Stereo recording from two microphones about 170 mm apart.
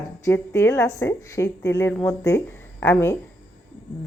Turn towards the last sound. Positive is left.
turn(degrees=15)  # may be behind; listen again after turning